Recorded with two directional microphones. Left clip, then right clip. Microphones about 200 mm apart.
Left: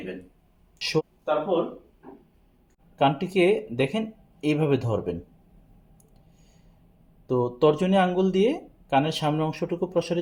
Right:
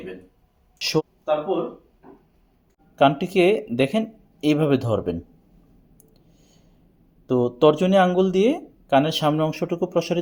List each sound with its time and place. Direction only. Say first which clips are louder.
0.8 s a sound: right 3 dB; 35° right (ahead or behind)
2.9 s speech: right 5 dB; 40° right (ahead or behind)
7.3 s speech: right 4 dB; 35° right (ahead or behind)